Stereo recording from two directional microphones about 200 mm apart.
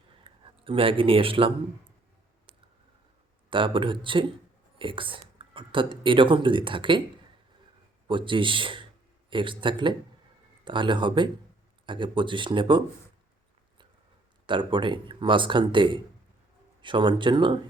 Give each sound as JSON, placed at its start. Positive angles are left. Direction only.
{"t": 0.3, "sound": "speech", "side_deg": -25}
{"t": 3.5, "sound": "speech", "side_deg": -25}
{"t": 8.0, "sound": "a man's voice", "side_deg": -25}
{"t": 14.4, "sound": "speech", "side_deg": -25}